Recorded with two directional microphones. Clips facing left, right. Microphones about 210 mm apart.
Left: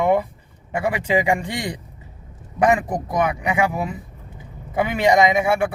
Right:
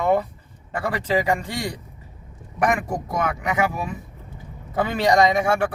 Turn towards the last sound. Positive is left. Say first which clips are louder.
# left 1 dB
turn(degrees=10)  # may be behind; listen again after turning